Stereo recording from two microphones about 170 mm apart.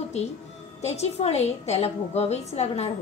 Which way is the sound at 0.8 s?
40° left (ahead or behind).